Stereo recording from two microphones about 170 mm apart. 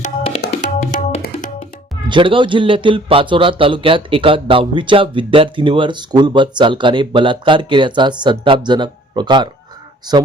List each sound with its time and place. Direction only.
0.2 s tabla: 35° left (ahead or behind)
0.6 s tabla: 50° left (ahead or behind)
2.0 s speech: 30° right (ahead or behind)